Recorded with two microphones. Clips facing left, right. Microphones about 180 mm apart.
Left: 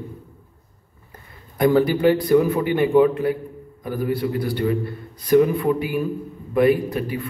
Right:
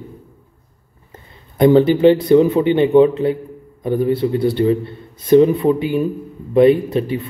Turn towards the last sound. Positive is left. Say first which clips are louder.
# right 5 dB
turn(degrees=-25)  # may be behind; listen again after turning